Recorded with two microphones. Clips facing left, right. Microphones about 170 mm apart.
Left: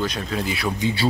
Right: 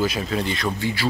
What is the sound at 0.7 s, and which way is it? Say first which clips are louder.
Speech: left 2 dB; 20° left (ahead or behind).